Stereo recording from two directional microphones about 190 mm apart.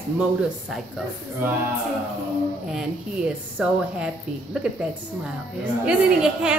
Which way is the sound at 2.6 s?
5° right (ahead or behind).